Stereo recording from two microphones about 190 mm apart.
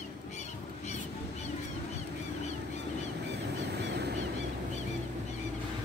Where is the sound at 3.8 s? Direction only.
60° right (ahead or behind).